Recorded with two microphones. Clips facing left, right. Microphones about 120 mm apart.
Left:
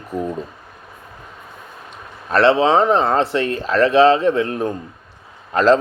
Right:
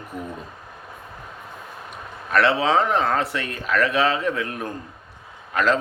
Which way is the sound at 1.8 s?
30° left (ahead or behind).